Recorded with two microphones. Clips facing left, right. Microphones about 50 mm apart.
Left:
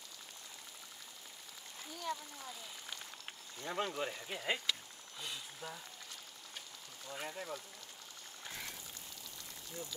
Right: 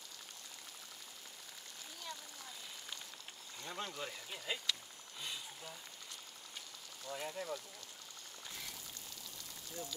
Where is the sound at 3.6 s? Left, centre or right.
Left.